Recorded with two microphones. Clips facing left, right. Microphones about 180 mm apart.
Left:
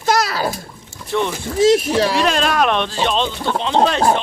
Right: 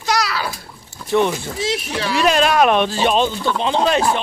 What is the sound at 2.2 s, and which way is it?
Speech, 5° right (ahead or behind).